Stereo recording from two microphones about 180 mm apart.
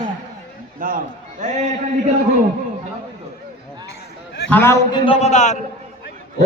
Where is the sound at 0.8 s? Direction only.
50° right (ahead or behind).